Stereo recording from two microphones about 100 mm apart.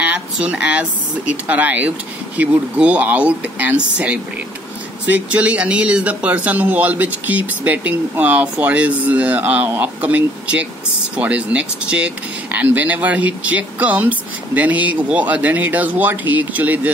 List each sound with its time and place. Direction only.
0.0 s speech: 15° right (ahead or behind)